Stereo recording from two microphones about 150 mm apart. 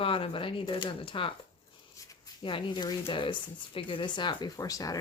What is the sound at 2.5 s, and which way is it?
A woman's voice, 35° left (ahead or behind).